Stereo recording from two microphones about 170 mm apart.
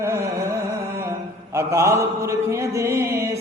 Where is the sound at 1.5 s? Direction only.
15° right (ahead or behind).